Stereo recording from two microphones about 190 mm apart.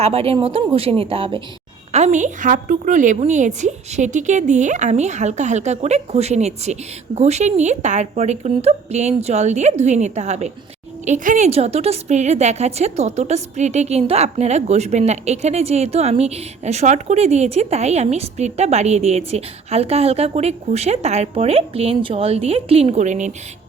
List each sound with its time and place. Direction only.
0.0 s a woman's voice: 30° right (ahead or behind)